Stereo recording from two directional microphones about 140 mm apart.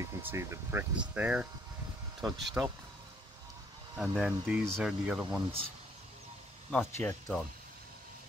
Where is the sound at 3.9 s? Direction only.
5° right (ahead or behind).